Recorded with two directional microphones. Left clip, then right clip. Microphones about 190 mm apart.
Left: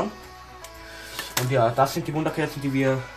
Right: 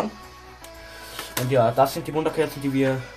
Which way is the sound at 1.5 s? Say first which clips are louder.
Right 2 dB; 35° right (ahead or behind).